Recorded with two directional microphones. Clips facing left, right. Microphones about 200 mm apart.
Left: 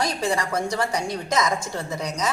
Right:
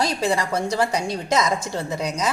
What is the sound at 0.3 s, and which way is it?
Speech, 30° right (ahead or behind).